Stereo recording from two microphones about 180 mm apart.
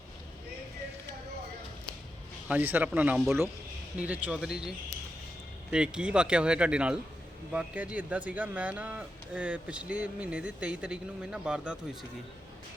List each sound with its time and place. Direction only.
2.5 s speech: 10° right (ahead or behind)
5.7 s speech: 5° right (ahead or behind)